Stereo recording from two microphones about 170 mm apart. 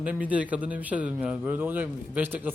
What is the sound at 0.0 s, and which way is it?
A man's voice, 10° right (ahead or behind).